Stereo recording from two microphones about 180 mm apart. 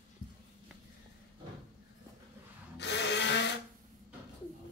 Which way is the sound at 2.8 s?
75° left (ahead or behind).